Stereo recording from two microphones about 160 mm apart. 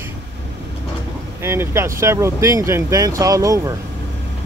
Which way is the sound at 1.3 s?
15° right (ahead or behind).